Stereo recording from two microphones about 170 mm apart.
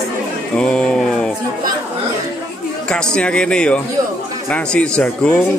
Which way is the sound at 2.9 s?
5° left (ahead or behind).